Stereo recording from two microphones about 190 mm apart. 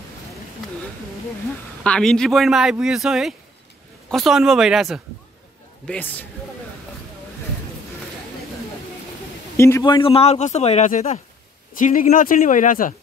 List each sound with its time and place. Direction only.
1.8 s speech: 5° left (ahead or behind)
5.9 s a man's voice: 10° left (ahead or behind)
9.6 s a man's voice: 15° left (ahead or behind); by 12.9 s 45° left (ahead or behind)